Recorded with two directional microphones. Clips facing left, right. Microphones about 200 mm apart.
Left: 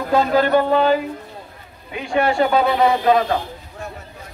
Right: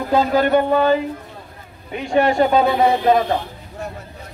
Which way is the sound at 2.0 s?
20° right (ahead or behind).